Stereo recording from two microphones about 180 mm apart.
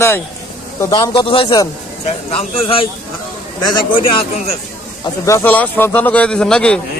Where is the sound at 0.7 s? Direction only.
15° left (ahead or behind).